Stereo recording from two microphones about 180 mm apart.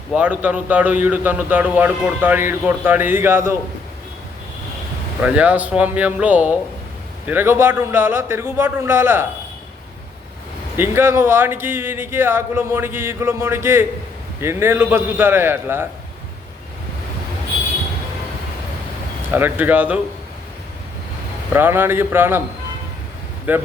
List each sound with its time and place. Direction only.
0.1 s a man's voice: 10° right (ahead or behind)
5.2 s a man's voice: 10° right (ahead or behind)
10.8 s a man's voice: 15° right (ahead or behind)
19.3 s a man's voice: 10° right (ahead or behind)
21.5 s a man's voice: 10° right (ahead or behind)
23.5 s a man's voice: 10° right (ahead or behind)